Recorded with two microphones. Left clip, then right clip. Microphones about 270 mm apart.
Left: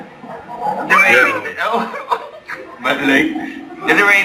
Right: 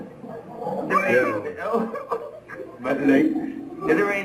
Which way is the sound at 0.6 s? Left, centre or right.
Centre.